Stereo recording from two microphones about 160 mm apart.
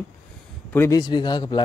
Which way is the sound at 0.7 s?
15° left (ahead or behind).